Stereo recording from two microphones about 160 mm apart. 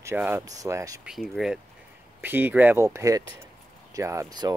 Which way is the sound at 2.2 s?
10° right (ahead or behind).